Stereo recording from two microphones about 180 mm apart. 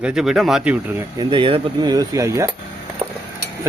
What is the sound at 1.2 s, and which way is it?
Cutlery, 25° right (ahead or behind).